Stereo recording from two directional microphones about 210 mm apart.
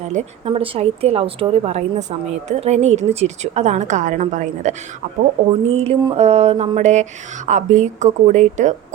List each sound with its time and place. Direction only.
0.0 s a woman's voice: 35° right (ahead or behind)
5.7 s a woman's voice: 30° right (ahead or behind)